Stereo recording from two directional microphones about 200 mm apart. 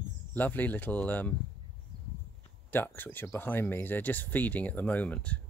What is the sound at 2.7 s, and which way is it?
Speech, 10° left (ahead or behind).